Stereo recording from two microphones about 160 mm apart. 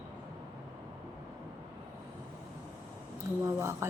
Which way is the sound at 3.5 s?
15° right (ahead or behind).